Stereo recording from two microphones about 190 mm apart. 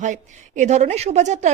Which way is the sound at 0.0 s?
40° right (ahead or behind).